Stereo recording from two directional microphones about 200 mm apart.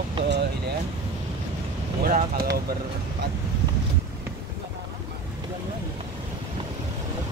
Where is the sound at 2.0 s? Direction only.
45° right (ahead or behind).